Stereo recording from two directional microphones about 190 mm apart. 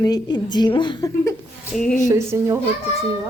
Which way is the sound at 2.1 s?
15° right (ahead or behind).